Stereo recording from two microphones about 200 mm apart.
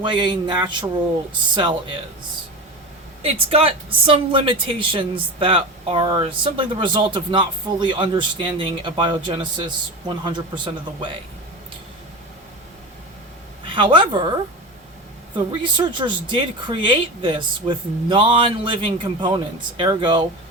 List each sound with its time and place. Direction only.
0.0 s speech: 25° right (ahead or behind)
3.2 s speech: 30° right (ahead or behind)
13.7 s speech: 25° right (ahead or behind)
15.6 s speech: 25° right (ahead or behind)